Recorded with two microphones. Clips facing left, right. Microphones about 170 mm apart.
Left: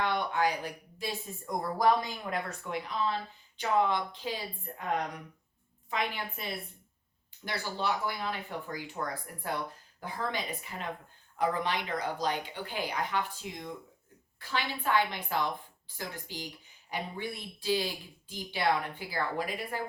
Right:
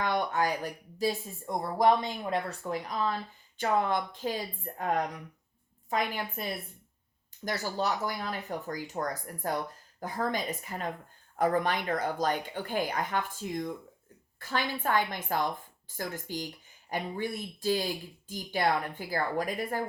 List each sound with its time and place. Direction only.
0.0 s speech: 45° right (ahead or behind)
1.8 s speech: 25° right (ahead or behind); by 4.8 s 45° right (ahead or behind)
5.9 s speech: 45° right (ahead or behind)
7.4 s speech: 45° right (ahead or behind)